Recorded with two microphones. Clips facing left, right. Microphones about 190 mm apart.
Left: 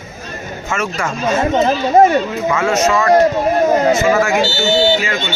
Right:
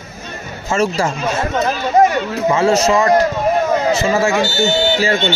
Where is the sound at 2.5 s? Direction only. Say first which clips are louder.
Right 2 dB; 30° right (ahead or behind).